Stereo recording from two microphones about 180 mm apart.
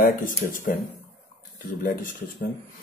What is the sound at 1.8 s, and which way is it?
Speech, 50° left (ahead or behind).